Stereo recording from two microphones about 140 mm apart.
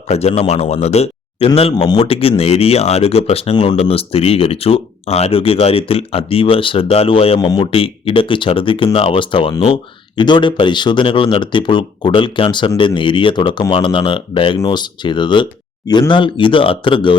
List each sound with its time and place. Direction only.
0.1 s speech: 50° left (ahead or behind)
7.3 s speech: 30° left (ahead or behind)